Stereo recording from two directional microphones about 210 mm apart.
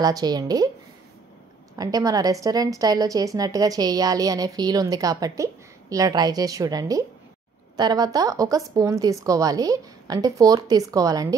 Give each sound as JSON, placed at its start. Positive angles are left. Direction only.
{"t": 0.0, "sound": "speech", "side_deg": -20}
{"t": 1.8, "sound": "a woman's voice", "side_deg": -15}